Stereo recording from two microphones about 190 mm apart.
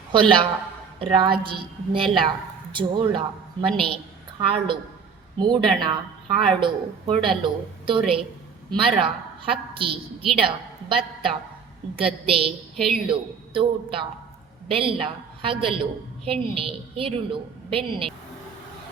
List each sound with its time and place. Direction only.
0.1 s a woman's voice: 25° right (ahead or behind)
12.7 s a woman's voice: centre (ahead or behind)
13.1 s a woman's voice: 25° right (ahead or behind)